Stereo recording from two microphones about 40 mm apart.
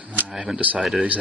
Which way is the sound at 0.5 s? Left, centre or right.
Right.